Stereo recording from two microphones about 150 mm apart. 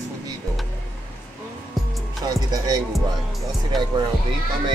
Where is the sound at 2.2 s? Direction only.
25° right (ahead or behind).